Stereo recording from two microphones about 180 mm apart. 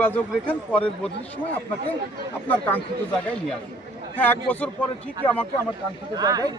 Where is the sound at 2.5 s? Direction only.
10° left (ahead or behind).